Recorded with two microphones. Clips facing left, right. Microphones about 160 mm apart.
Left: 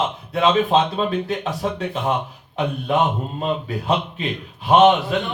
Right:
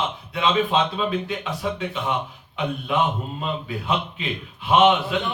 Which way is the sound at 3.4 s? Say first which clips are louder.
Left 6 dB; 40° left (ahead or behind).